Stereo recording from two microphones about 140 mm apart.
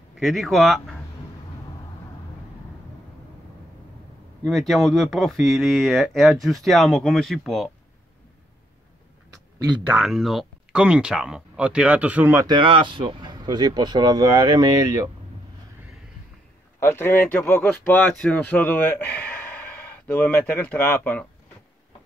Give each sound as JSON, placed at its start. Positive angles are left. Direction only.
{"t": 0.1, "sound": "speech", "side_deg": 0}
{"t": 4.5, "sound": "speech", "side_deg": 0}
{"t": 9.8, "sound": "speech", "side_deg": -5}
{"t": 12.4, "sound": "speech", "side_deg": -35}
{"t": 16.8, "sound": "a man's voice", "side_deg": 15}